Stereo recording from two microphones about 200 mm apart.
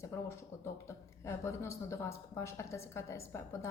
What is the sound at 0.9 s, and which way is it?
Speech, 15° left (ahead or behind).